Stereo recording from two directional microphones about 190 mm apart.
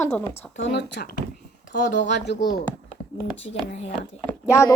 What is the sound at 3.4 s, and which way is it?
Speech, 35° left (ahead or behind).